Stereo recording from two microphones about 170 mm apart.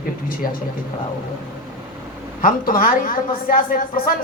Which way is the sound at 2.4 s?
55° left (ahead or behind).